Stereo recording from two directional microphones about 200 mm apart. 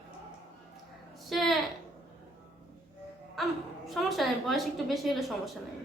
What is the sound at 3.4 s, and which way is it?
A woman's voice, centre (ahead or behind).